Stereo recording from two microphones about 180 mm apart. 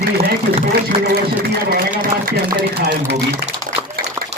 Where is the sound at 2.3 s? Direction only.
60° right (ahead or behind).